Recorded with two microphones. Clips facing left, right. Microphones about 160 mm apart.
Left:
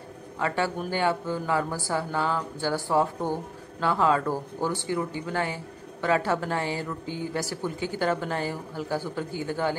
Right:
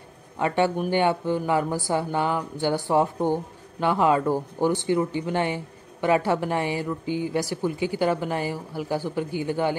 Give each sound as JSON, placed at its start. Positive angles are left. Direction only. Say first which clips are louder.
{"t": 0.4, "sound": "speech", "louder": "right 5 dB", "side_deg": -20}